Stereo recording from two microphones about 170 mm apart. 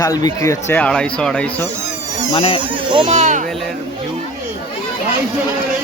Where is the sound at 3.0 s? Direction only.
45° right (ahead or behind).